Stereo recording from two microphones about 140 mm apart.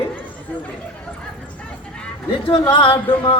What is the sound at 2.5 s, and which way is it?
Speech, 35° left (ahead or behind).